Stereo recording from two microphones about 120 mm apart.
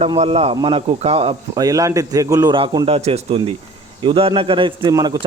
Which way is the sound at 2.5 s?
40° right (ahead or behind).